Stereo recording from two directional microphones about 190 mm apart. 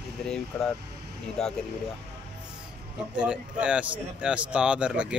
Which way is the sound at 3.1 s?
5° right (ahead or behind).